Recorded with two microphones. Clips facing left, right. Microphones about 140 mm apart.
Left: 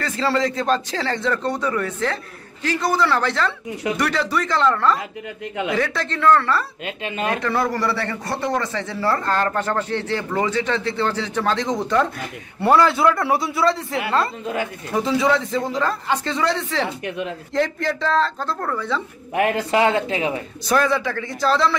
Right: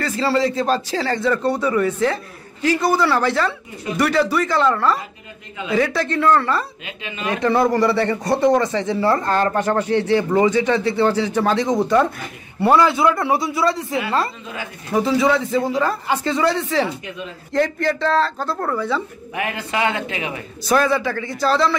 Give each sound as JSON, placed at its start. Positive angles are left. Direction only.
{"t": 0.0, "sound": "speech", "side_deg": -5}
{"t": 7.0, "sound": "speech", "side_deg": 50}
{"t": 7.4, "sound": "a man's voice", "side_deg": -20}
{"t": 14.4, "sound": "speech", "side_deg": 50}
{"t": 15.0, "sound": "a man's voice", "side_deg": -5}
{"t": 19.3, "sound": "a man's voice", "side_deg": 45}
{"t": 20.6, "sound": "a man's voice", "side_deg": -5}